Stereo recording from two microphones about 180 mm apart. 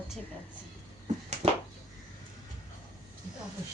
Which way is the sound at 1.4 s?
30° right (ahead or behind).